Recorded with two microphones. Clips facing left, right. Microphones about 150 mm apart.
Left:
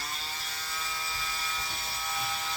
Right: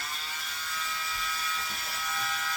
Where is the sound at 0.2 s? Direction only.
30° left (ahead or behind).